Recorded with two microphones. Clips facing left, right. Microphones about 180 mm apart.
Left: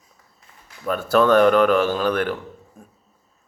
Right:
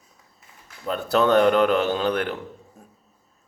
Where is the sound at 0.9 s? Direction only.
20° right (ahead or behind).